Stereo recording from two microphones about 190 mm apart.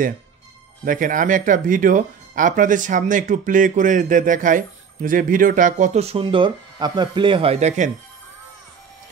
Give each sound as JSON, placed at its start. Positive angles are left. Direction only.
{"t": 0.8, "sound": "speech", "side_deg": -45}